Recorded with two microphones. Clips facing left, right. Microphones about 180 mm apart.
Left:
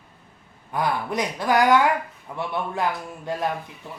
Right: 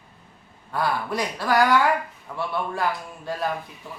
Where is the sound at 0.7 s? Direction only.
20° left (ahead or behind).